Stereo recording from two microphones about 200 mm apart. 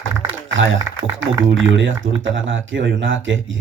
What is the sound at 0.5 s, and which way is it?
Speech, 70° right (ahead or behind).